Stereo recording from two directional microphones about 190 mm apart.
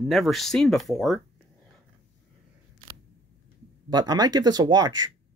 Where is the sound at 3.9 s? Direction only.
20° right (ahead or behind).